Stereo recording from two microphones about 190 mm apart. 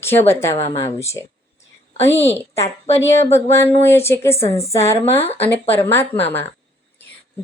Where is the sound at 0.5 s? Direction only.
35° left (ahead or behind).